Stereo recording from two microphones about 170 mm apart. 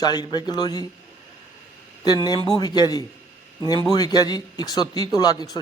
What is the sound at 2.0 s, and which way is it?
A man's voice, 25° left (ahead or behind).